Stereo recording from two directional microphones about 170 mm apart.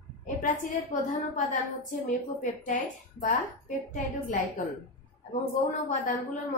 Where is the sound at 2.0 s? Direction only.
50° left (ahead or behind).